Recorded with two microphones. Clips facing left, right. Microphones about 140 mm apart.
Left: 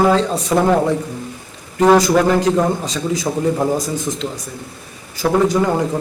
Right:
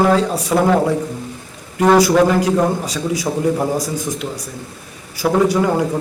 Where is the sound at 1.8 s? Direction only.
10° right (ahead or behind).